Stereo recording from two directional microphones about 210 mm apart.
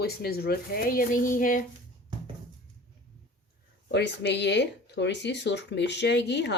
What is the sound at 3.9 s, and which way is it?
Speech, 55° left (ahead or behind).